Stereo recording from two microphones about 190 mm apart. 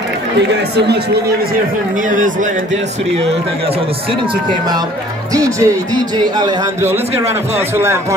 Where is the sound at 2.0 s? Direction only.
40° right (ahead or behind).